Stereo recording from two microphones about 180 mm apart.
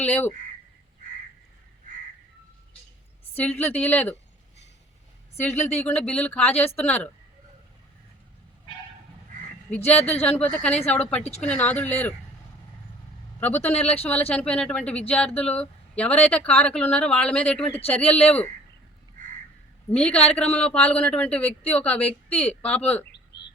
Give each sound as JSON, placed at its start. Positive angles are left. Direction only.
{"t": 0.0, "sound": "speech", "side_deg": 10}
{"t": 3.3, "sound": "speech", "side_deg": 10}
{"t": 5.4, "sound": "speech", "side_deg": 15}
{"t": 9.8, "sound": "speech", "side_deg": 35}
{"t": 10.3, "sound": "speech", "side_deg": 10}
{"t": 13.4, "sound": "speech", "side_deg": 10}
{"t": 13.7, "sound": "speech", "side_deg": 35}
{"t": 14.0, "sound": "speech", "side_deg": 10}
{"t": 19.9, "sound": "speech", "side_deg": 5}
{"t": 23.1, "sound": "a sound", "side_deg": 70}